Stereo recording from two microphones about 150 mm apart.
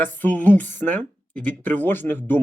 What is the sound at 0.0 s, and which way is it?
Speech, 10° left (ahead or behind).